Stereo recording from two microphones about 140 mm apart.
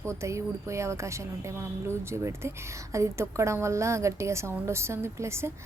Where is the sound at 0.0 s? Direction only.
20° right (ahead or behind).